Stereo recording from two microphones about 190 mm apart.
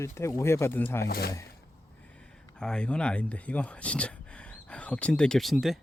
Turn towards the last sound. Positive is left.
turn(degrees=0)  # may be behind; listen again after turning